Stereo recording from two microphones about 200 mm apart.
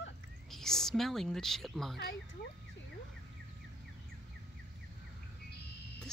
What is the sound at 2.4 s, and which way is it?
Speech, 50° left (ahead or behind).